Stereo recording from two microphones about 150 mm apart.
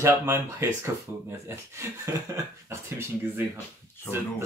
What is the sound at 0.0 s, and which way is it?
Speech, 15° right (ahead or behind).